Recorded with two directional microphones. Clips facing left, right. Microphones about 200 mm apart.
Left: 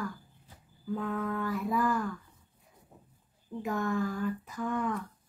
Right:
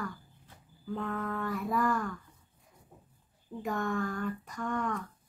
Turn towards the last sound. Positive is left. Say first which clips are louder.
# left 2 dB
turn(degrees=5)  # may be behind; listen again after turning